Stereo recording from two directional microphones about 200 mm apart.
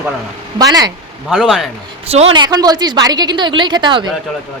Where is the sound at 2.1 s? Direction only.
30° right (ahead or behind).